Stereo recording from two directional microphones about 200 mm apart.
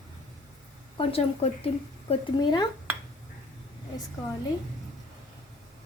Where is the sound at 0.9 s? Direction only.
30° left (ahead or behind).